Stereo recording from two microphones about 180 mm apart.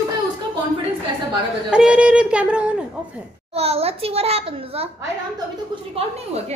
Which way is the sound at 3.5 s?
35° right (ahead or behind).